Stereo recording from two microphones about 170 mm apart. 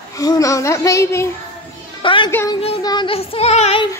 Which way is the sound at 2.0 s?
30° left (ahead or behind).